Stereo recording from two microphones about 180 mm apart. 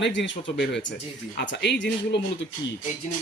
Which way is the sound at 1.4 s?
70° left (ahead or behind).